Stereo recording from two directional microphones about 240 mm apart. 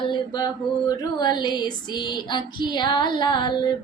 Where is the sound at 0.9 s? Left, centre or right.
Centre.